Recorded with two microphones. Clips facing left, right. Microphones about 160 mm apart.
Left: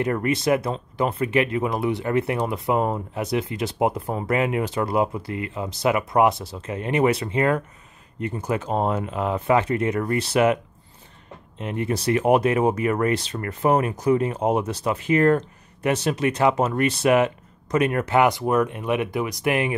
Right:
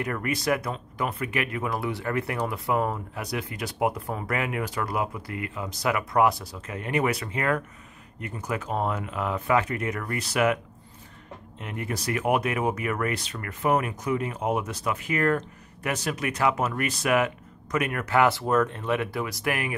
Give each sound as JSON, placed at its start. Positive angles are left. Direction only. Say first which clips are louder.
{"t": 0.0, "sound": "speech", "louder": "left 6 dB", "side_deg": 25}